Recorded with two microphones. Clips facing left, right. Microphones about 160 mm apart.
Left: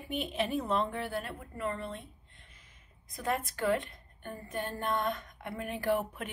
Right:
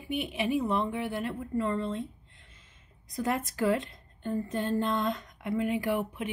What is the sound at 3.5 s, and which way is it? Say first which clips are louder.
A woman's voice: right 3 dB; 20° right (ahead or behind).